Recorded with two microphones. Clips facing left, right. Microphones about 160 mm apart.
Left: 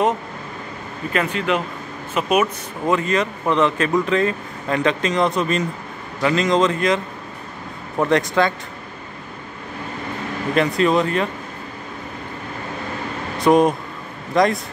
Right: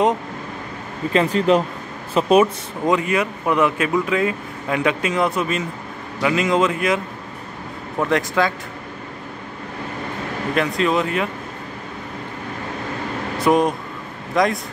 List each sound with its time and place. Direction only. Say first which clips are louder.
1.1 s speech: right 5 dB; 35° right (ahead or behind)
2.8 s speech: even; 15° right (ahead or behind)
8.1 s speech: left 2 dB; 5° right (ahead or behind)
10.5 s speech: left 3 dB; centre (ahead or behind)
13.4 s speech: left 2 dB; centre (ahead or behind)